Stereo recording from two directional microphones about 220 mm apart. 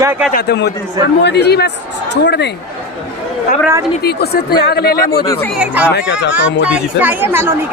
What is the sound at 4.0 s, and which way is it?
A man's voice, 45° left (ahead or behind).